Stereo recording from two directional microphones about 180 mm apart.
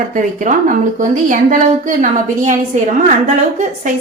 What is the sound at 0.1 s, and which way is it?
A woman's voice, 45° right (ahead or behind).